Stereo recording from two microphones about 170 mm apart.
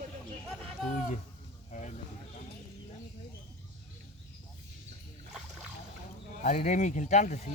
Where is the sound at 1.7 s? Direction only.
45° left (ahead or behind).